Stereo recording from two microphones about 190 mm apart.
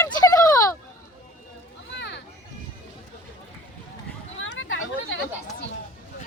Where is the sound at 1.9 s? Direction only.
65° left (ahead or behind).